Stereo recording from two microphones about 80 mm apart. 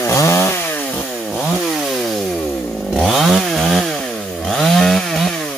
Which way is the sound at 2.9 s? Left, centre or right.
Centre.